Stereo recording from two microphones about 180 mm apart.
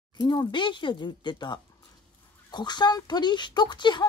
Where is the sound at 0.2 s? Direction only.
20° left (ahead or behind).